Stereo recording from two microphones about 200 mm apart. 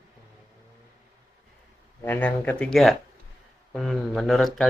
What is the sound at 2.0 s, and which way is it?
Speech, 10° left (ahead or behind).